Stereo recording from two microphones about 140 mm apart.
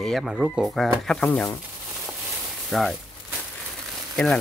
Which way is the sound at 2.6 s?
Centre (ahead or behind).